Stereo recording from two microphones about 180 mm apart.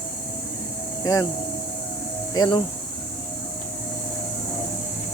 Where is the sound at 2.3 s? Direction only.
25° left (ahead or behind).